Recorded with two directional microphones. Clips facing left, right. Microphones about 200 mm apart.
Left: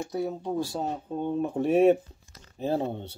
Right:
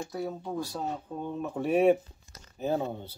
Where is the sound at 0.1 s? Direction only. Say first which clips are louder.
Left 6 dB; 20° left (ahead or behind).